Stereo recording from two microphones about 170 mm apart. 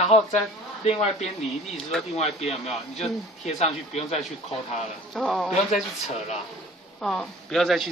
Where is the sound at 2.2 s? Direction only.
40° left (ahead or behind).